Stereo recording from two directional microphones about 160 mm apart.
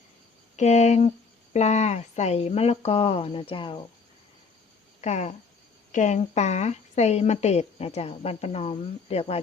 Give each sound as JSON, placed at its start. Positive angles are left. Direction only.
{"t": 0.5, "sound": "a woman's voice", "side_deg": 45}
{"t": 4.9, "sound": "a woman's voice", "side_deg": 45}